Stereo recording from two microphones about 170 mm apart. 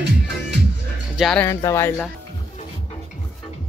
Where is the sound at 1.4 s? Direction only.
15° left (ahead or behind).